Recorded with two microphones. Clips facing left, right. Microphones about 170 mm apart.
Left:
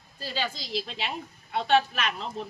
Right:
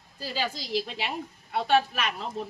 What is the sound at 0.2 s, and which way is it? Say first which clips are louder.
Speech: right 1 dB; 10° right (ahead or behind).